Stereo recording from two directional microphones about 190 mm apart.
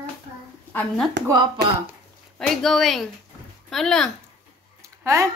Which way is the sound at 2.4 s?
Centre (ahead or behind).